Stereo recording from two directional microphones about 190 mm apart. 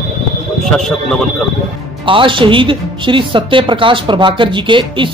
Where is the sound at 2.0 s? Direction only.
25° right (ahead or behind).